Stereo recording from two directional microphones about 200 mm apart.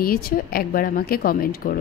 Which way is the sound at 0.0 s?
45° left (ahead or behind).